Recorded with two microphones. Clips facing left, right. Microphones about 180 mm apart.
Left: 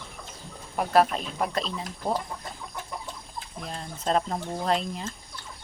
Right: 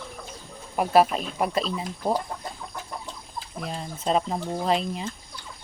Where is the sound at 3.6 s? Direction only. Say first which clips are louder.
Right 2 dB; 5° right (ahead or behind).